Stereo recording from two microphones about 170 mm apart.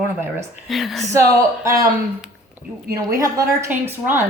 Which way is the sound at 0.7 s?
Centre (ahead or behind).